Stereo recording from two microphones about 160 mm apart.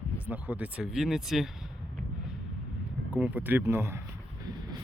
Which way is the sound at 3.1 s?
10° right (ahead or behind).